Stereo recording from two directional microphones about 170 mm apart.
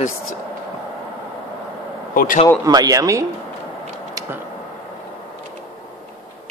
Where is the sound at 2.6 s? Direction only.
20° right (ahead or behind).